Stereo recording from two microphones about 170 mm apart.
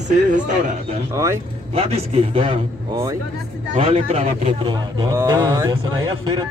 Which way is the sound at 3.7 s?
35° right (ahead or behind).